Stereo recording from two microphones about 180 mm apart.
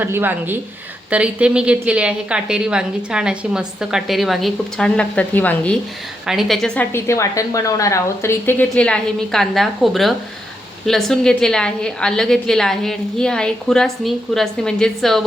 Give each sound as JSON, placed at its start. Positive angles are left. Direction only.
{"t": 0.0, "sound": "a woman's voice", "side_deg": -10}